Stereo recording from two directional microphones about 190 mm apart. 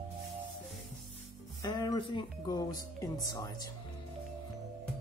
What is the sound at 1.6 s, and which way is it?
Speech, 20° left (ahead or behind).